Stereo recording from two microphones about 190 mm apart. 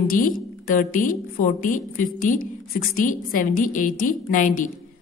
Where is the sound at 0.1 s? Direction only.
45° left (ahead or behind).